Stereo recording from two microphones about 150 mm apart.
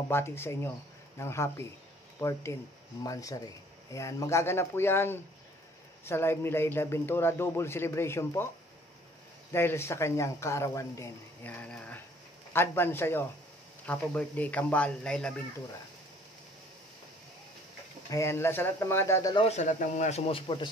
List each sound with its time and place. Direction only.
0.1 s speech: 15° left (ahead or behind)
9.5 s speech: 15° left (ahead or behind)
18.1 s speech: 15° left (ahead or behind)
19.3 s speech: 45° left (ahead or behind)